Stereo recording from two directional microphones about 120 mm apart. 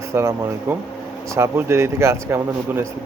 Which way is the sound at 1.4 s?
20° right (ahead or behind).